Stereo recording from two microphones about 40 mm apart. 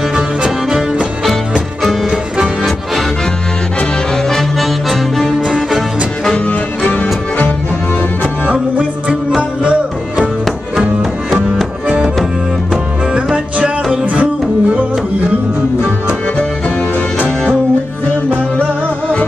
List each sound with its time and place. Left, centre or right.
0.4 s music: centre
2.0 s music: centre
4.3 s music: centre
6.4 s music: left
14.1 s music: right